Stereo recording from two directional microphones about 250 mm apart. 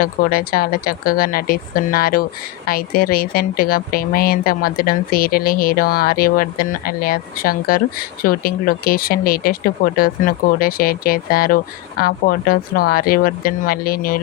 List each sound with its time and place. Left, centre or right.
0.0 s a woman's voice: left